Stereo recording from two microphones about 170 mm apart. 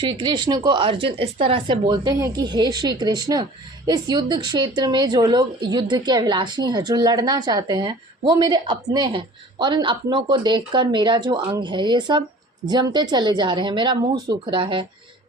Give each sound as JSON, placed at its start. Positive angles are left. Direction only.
{"t": 0.0, "sound": "a woman's voice", "side_deg": -25}